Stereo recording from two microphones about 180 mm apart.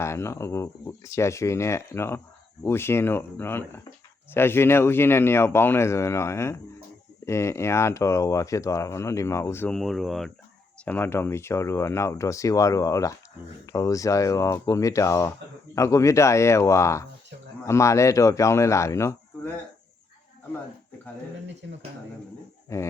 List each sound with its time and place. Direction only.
0.0 s speech: 15° left (ahead or behind)
10.8 s speech: 10° left (ahead or behind)
22.7 s speech: 15° left (ahead or behind)